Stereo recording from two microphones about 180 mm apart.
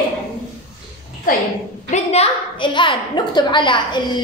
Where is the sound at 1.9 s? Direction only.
35° left (ahead or behind).